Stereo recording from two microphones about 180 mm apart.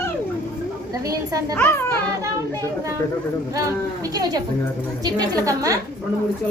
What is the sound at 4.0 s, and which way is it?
A woman's voice, 20° right (ahead or behind).